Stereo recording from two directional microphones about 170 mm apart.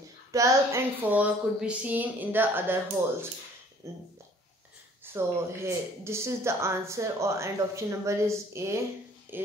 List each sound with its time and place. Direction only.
0.3 s speech: 15° right (ahead or behind)
5.0 s speech: 15° right (ahead or behind)